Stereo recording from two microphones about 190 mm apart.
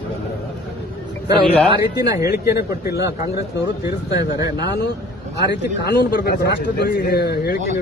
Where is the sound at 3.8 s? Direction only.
20° right (ahead or behind).